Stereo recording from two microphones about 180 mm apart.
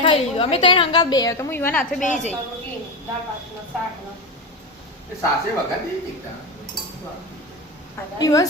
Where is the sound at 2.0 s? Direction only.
45° left (ahead or behind).